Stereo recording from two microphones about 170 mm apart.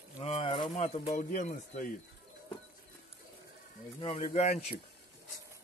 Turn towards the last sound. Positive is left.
turn(degrees=40)  # may be behind; listen again after turning